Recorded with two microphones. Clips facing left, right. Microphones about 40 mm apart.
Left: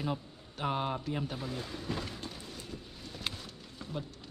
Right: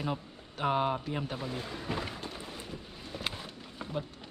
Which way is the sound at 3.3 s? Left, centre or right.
Right.